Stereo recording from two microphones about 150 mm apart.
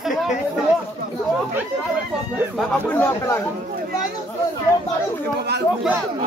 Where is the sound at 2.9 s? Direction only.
15° left (ahead or behind).